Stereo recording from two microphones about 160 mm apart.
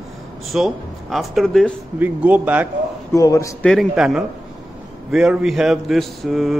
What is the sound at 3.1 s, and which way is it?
Speech, 20° left (ahead or behind).